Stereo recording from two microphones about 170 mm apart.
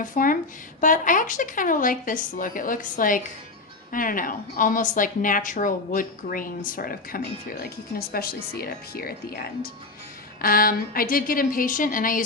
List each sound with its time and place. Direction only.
0.0 s a woman's voice: 50° left (ahead or behind)